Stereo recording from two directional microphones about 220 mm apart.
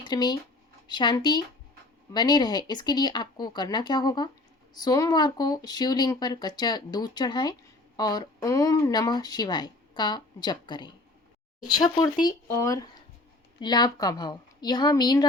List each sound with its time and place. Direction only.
0.1 s speech: 20° left (ahead or behind)